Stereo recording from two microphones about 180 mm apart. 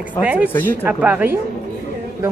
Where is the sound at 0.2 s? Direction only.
10° right (ahead or behind).